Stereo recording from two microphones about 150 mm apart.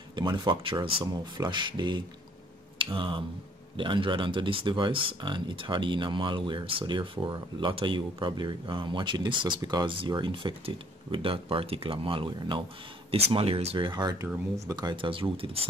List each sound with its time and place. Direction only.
0.1 s speech: 30° right (ahead or behind)